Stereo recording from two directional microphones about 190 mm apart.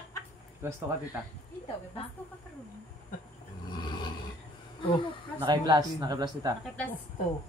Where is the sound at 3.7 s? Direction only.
25° left (ahead or behind).